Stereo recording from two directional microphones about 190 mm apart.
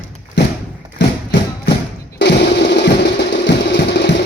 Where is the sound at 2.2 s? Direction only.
65° left (ahead or behind).